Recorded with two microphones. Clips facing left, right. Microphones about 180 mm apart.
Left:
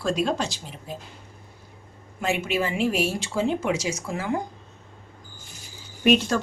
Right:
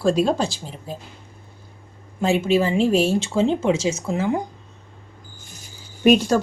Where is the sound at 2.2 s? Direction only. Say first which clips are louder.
Right 7 dB; 30° right (ahead or behind).